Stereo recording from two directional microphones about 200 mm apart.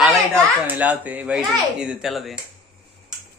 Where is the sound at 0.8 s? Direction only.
5° right (ahead or behind).